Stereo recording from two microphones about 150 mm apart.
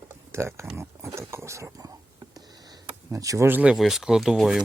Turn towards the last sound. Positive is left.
turn(degrees=-5)  # may be behind; listen again after turning